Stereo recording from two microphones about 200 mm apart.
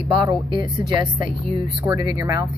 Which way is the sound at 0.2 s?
25° right (ahead or behind).